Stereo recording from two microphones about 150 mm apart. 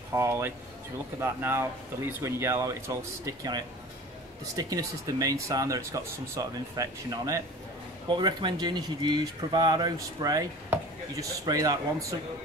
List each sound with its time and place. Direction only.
0.1 s speech: 20° right (ahead or behind)